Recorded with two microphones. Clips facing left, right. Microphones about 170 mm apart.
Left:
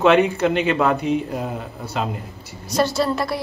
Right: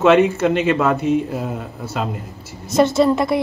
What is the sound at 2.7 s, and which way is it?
Speech, 20° right (ahead or behind).